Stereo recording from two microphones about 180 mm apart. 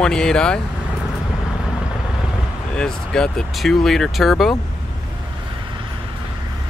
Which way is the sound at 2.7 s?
5° left (ahead or behind).